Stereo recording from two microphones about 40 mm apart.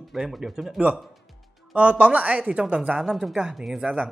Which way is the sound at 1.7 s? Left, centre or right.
Right.